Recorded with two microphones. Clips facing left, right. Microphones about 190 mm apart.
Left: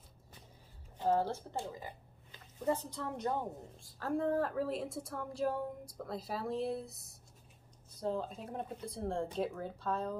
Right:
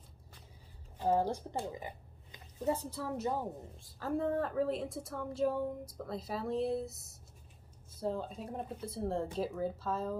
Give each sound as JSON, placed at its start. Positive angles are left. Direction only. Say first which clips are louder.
{"t": 1.0, "sound": "speech", "louder": "right 1 dB", "side_deg": -15}
{"t": 1.7, "sound": "a sound", "louder": "right 3 dB", "side_deg": -20}
{"t": 2.6, "sound": "a woman's voice", "louder": "right 1 dB", "side_deg": -10}